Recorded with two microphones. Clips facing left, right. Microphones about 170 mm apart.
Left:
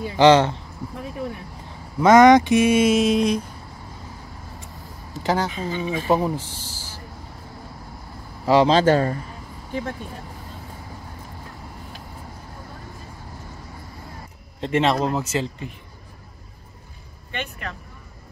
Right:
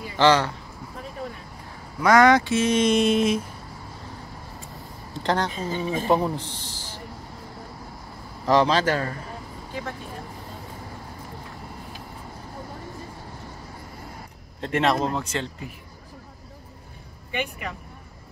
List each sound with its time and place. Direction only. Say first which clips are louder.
0.2 s a man's voice: left 5 dB; 25° left (ahead or behind)
2.0 s speech: left 5 dB; 20° left (ahead or behind); by 3.4 s centre (ahead or behind)
5.1 s speech: left 2 dB; 5° left (ahead or behind)
5.5 s speech: left 1 dB; 45° right (ahead or behind)
6.0 s a man's voice: left 2 dB; 5° left (ahead or behind)
8.6 s a man's voice: left 6 dB; 25° left (ahead or behind)
14.6 s speech: left 2 dB; centre (ahead or behind)
17.3 s speech: right 2 dB; 10° right (ahead or behind)